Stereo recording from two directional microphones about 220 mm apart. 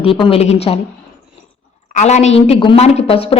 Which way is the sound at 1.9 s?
30° left (ahead or behind).